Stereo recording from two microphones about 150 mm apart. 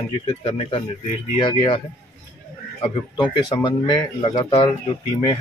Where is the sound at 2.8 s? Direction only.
30° left (ahead or behind).